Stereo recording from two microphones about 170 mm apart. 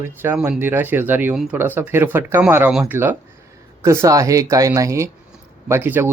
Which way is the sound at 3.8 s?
15° right (ahead or behind).